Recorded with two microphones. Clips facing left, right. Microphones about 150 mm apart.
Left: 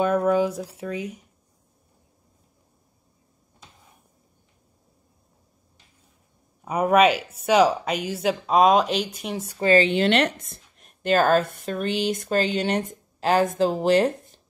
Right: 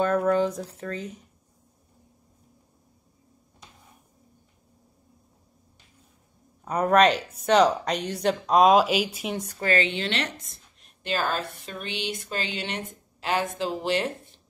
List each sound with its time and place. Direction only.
0.0 s speech: 10° left (ahead or behind)
6.6 s speech: 10° left (ahead or behind)
9.6 s speech: 25° left (ahead or behind)
9.8 s a woman's voice: 50° left (ahead or behind)